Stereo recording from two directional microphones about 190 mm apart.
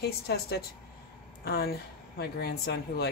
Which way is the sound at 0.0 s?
55° left (ahead or behind).